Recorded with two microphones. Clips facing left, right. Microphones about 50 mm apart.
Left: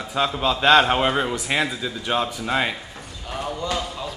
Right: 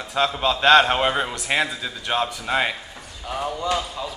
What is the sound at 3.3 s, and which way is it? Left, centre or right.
Speech, centre.